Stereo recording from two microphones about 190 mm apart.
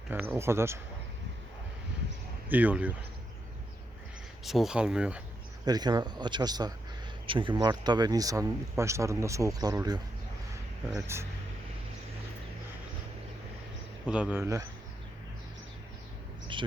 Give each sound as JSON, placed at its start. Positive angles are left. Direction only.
{"t": 0.3, "sound": "speech", "side_deg": -15}
{"t": 2.5, "sound": "speech", "side_deg": -10}
{"t": 4.4, "sound": "speech", "side_deg": 0}
{"t": 5.6, "sound": "speech", "side_deg": -20}
{"t": 14.1, "sound": "speech", "side_deg": -5}
{"t": 16.5, "sound": "a sound", "side_deg": -25}